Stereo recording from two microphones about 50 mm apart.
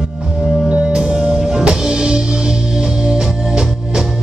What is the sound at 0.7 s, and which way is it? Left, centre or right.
Music, centre.